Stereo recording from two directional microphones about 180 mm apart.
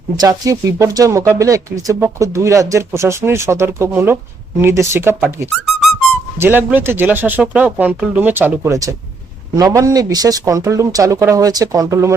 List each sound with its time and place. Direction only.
0.2 s speech: 20° right (ahead or behind)